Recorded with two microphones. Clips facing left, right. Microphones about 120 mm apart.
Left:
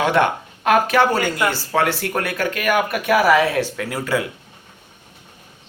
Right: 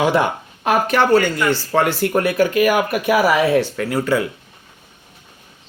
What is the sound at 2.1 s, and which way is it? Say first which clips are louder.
Speech: right 7 dB; 15° right (ahead or behind).